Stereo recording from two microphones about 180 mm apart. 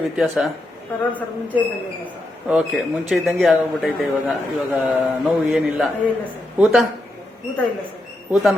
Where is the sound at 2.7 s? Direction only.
Centre (ahead or behind).